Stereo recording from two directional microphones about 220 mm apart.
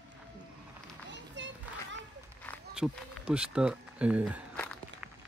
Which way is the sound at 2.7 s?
5° right (ahead or behind).